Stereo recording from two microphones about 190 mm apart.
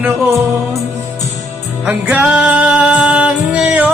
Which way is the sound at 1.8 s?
5° right (ahead or behind).